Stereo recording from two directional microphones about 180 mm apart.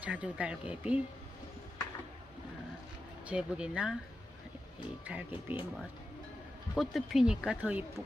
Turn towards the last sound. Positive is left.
turn(degrees=-10)  # may be behind; listen again after turning